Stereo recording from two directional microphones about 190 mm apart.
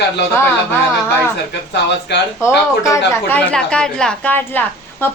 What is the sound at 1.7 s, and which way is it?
Speech, 65° left (ahead or behind).